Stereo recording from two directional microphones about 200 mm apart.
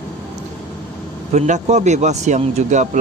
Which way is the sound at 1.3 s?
35° right (ahead or behind).